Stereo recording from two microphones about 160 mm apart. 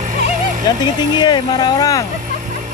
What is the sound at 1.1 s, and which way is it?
Speech, 25° left (ahead or behind).